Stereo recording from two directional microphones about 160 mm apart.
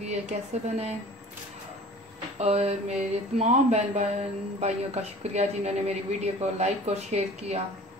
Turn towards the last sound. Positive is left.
turn(degrees=-45)  # may be behind; listen again after turning